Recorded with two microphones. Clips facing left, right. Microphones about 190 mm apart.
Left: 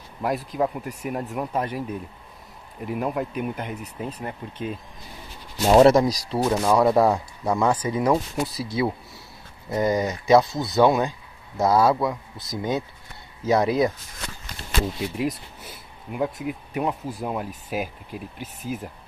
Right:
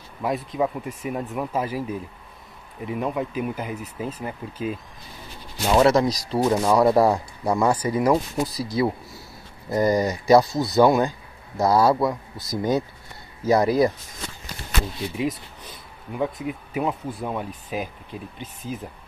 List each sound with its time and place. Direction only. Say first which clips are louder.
0.2 s speech: even; centre (ahead or behind)
5.7 s speech: left 3 dB; 25° left (ahead or behind)
6.0 s speech: right 2 dB; centre (ahead or behind)
9.7 s speech: right 2 dB; centre (ahead or behind)
12.4 s speech: right 3 dB; 40° right (ahead or behind)
13.5 s speech: right 2 dB; centre (ahead or behind)
15.1 s speech: even; centre (ahead or behind)